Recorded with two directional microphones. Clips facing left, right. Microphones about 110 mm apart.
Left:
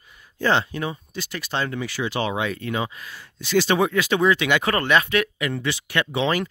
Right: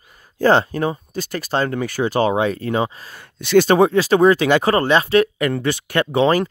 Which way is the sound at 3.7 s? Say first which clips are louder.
Right 7 dB; 35° right (ahead or behind).